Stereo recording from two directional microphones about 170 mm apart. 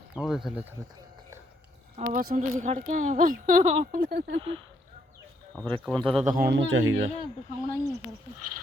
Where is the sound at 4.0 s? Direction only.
60° right (ahead or behind).